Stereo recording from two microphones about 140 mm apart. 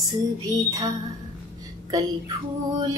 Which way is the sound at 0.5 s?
25° right (ahead or behind).